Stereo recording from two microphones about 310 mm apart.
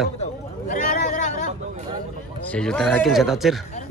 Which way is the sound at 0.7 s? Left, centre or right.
Left.